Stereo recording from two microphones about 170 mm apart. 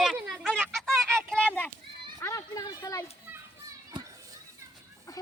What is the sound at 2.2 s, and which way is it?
Speech, 20° left (ahead or behind).